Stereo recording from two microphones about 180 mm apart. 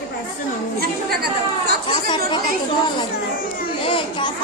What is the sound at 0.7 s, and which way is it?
Speech, 60° right (ahead or behind).